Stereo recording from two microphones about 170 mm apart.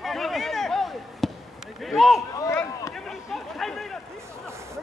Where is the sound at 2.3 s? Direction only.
20° left (ahead or behind).